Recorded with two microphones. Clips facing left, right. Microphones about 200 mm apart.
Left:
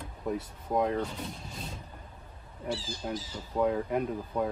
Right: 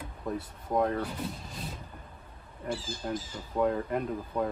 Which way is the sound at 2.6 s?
50° right (ahead or behind).